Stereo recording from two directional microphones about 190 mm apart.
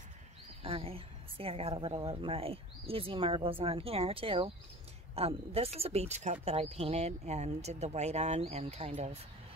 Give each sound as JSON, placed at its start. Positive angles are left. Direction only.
{"t": 0.7, "sound": "a woman's voice", "side_deg": -30}